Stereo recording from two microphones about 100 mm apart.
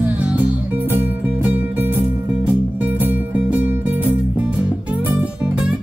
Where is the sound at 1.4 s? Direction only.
20° right (ahead or behind).